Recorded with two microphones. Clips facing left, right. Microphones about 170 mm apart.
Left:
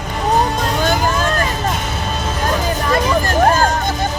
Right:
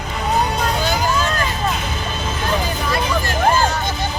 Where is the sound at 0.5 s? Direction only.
50° left (ahead or behind).